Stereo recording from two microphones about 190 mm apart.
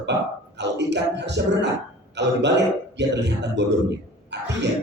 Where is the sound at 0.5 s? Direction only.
65° right (ahead or behind).